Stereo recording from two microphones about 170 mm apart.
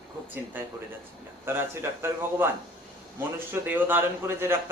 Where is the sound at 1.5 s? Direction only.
15° right (ahead or behind).